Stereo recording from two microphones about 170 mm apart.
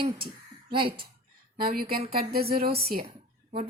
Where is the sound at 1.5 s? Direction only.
60° right (ahead or behind).